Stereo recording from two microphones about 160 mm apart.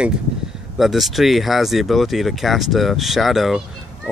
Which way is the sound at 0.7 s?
Centre (ahead or behind).